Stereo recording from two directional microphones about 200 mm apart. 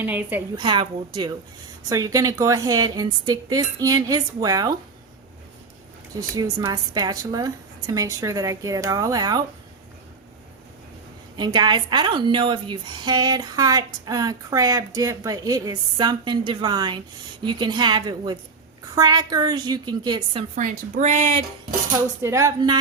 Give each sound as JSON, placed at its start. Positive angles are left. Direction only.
{"t": 0.0, "sound": "a woman's voice", "side_deg": -10}
{"t": 0.5, "sound": "a woman's voice", "side_deg": -25}
{"t": 6.3, "sound": "a woman's voice", "side_deg": -20}
{"t": 11.3, "sound": "a woman's voice", "side_deg": -20}
{"t": 20.6, "sound": "speech", "side_deg": -40}
{"t": 22.2, "sound": "a woman's voice", "side_deg": -15}